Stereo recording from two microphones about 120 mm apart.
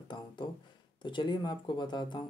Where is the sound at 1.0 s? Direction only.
40° left (ahead or behind).